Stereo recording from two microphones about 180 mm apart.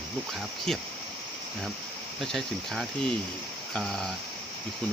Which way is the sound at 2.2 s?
Centre (ahead or behind).